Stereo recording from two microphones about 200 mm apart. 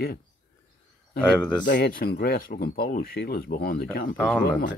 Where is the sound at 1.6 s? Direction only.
45° left (ahead or behind).